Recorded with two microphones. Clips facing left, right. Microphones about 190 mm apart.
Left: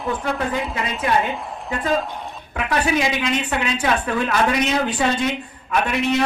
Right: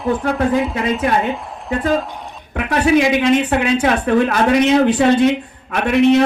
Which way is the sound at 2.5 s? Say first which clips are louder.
Right 6 dB; 50° right (ahead or behind).